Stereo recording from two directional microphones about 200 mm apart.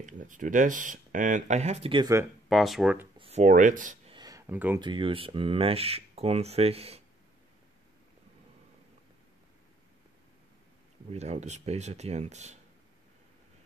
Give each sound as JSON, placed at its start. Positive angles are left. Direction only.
{"t": 0.0, "sound": "speech", "side_deg": -40}
{"t": 2.5, "sound": "speech", "side_deg": 0}
{"t": 3.2, "sound": "speech", "side_deg": -30}
{"t": 4.1, "sound": "a sound", "side_deg": -20}
{"t": 4.7, "sound": "speech", "side_deg": -25}
{"t": 11.1, "sound": "speech", "side_deg": -35}